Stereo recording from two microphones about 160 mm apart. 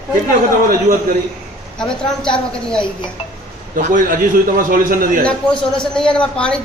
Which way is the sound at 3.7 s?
55° right (ahead or behind).